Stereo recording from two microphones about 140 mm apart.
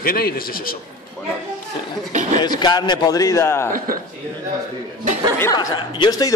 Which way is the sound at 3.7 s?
90° right.